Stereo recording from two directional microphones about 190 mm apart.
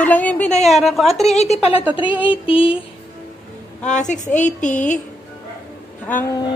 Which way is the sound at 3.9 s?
40° left (ahead or behind).